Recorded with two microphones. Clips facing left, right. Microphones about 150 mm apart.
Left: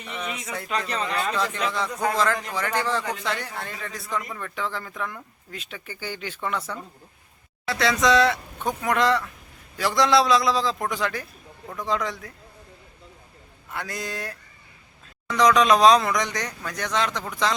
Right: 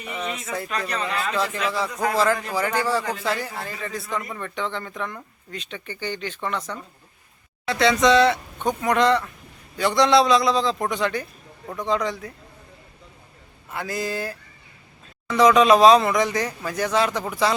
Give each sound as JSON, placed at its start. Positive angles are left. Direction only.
{"t": 0.0, "sound": "speech", "side_deg": -10}
{"t": 0.7, "sound": "speech", "side_deg": 25}
{"t": 1.7, "sound": "a man's voice", "side_deg": -5}
{"t": 13.7, "sound": "speech", "side_deg": 0}